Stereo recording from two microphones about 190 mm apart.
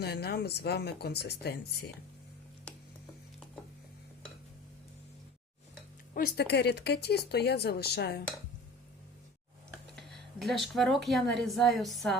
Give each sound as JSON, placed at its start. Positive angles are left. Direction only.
{"t": 0.0, "sound": "speech", "side_deg": 55}
{"t": 6.1, "sound": "speech", "side_deg": 55}
{"t": 9.9, "sound": "a woman's voice", "side_deg": 0}